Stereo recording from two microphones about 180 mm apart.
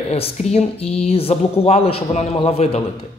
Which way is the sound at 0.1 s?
35° left (ahead or behind).